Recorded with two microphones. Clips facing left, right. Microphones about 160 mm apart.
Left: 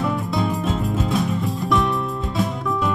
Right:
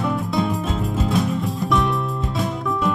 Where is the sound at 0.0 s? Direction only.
Centre (ahead or behind).